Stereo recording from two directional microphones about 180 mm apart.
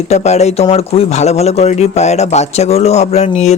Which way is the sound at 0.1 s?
40° left (ahead or behind).